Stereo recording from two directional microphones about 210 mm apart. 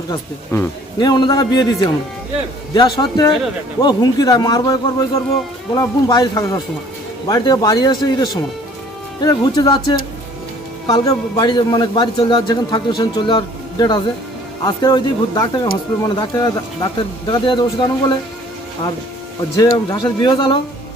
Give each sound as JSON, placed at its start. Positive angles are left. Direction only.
{"t": 0.1, "sound": "a man's voice", "side_deg": 20}
{"t": 19.7, "sound": "a man's voice", "side_deg": 20}